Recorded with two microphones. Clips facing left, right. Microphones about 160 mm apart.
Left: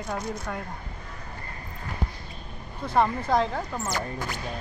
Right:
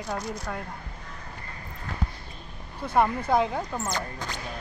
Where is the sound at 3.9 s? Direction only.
20° right (ahead or behind).